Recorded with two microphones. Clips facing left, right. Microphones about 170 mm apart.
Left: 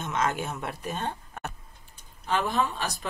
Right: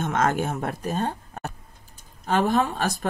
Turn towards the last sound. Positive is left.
turn(degrees=-50)  # may be behind; listen again after turning